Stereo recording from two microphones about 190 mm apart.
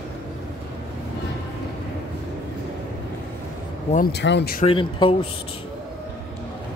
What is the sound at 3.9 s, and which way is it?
Speech, 55° left (ahead or behind).